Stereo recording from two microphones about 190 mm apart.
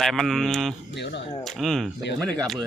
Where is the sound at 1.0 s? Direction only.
60° left (ahead or behind).